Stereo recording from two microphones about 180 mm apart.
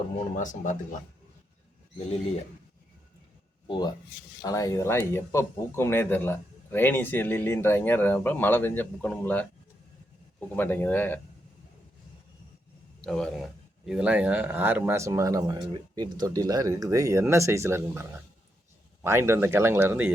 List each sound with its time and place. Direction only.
0.3 s speech: 45° left (ahead or behind)
2.0 s speech: 35° left (ahead or behind)
3.7 s speech: 25° left (ahead or behind); by 9.5 s 10° left (ahead or behind)
10.5 s speech: 10° left (ahead or behind)
13.1 s speech: 5° left (ahead or behind); by 18.0 s 15° right (ahead or behind)
19.0 s speech: 15° right (ahead or behind)